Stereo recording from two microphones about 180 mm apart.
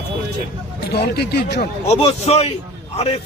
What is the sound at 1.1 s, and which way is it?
Speech, 60° left (ahead or behind).